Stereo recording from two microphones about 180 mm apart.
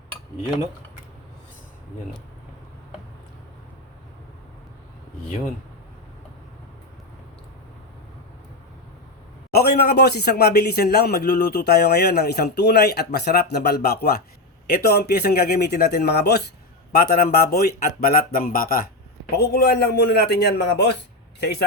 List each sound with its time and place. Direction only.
9.5 s speech: 60° left (ahead or behind)
19.3 s speech: 65° left (ahead or behind)